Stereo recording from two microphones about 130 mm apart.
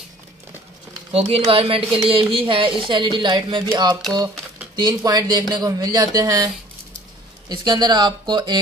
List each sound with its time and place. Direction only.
1.1 s speech: 45° right (ahead or behind)